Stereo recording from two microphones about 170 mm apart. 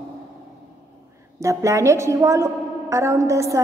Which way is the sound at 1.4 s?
20° right (ahead or behind).